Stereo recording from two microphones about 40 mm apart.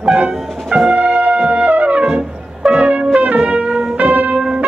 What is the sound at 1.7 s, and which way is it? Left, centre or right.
Music, right.